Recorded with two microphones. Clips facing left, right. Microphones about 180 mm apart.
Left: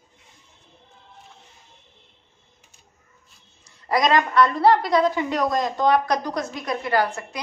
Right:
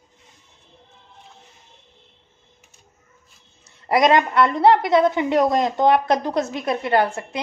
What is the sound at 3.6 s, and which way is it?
A woman's voice, 25° right (ahead or behind).